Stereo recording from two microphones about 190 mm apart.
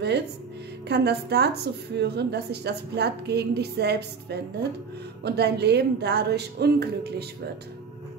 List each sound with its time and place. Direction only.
0.8 s a woman's voice: 60° right (ahead or behind)